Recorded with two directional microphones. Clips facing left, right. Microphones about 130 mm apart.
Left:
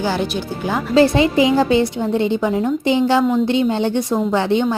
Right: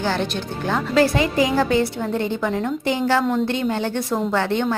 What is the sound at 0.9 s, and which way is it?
A woman's voice, 25° left (ahead or behind).